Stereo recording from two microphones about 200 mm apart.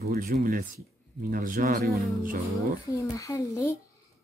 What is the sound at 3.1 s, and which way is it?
Speech, 15° left (ahead or behind).